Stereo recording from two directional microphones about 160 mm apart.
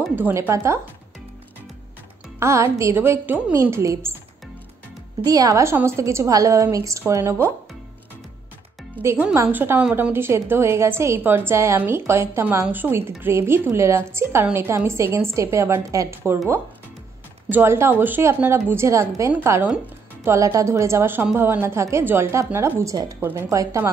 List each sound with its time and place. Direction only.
0.1 s a woman's voice: 15° right (ahead or behind)
2.4 s a woman's voice: 20° right (ahead or behind)
5.2 s a woman's voice: 25° right (ahead or behind)
8.9 s a woman's voice: 10° right (ahead or behind)
17.5 s a woman's voice: 15° right (ahead or behind)